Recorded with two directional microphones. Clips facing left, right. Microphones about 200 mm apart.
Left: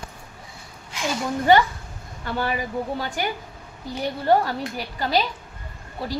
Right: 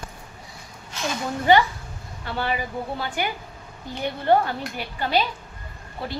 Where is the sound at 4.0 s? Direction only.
35° left (ahead or behind).